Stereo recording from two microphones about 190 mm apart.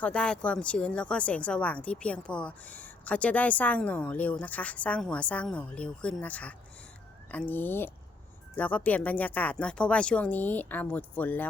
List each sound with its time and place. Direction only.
0.0 s speech: 5° left (ahead or behind)